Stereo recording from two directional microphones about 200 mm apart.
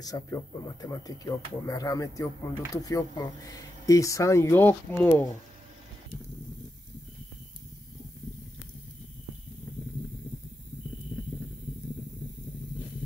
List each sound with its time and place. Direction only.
0.0 s speech: 20° left (ahead or behind)